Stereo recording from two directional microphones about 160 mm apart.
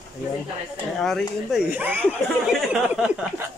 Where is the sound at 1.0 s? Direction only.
5° left (ahead or behind).